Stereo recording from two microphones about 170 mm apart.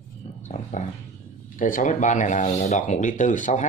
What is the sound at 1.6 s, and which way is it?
Speech, 50° left (ahead or behind).